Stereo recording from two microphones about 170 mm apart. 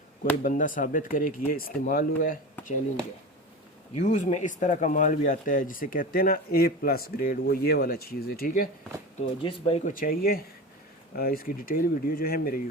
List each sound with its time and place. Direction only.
0.4 s speech: 50° left (ahead or behind)
3.9 s speech: 45° left (ahead or behind)
9.4 s speech: 35° left (ahead or behind)
9.9 s speech: 55° left (ahead or behind)